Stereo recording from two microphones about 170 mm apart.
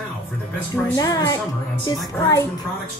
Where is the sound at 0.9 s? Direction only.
25° left (ahead or behind).